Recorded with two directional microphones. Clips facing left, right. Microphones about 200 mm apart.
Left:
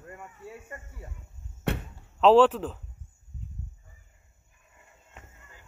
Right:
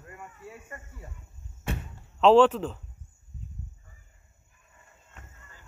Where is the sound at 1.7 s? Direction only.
65° left (ahead or behind).